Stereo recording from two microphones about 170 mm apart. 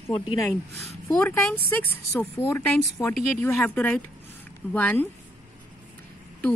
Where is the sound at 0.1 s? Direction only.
30° left (ahead or behind).